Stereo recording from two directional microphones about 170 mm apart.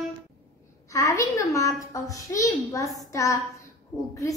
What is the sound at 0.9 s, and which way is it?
A child's voice, 20° left (ahead or behind).